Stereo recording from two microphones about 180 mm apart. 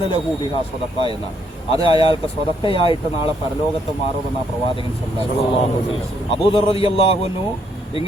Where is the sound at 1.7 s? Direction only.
30° left (ahead or behind).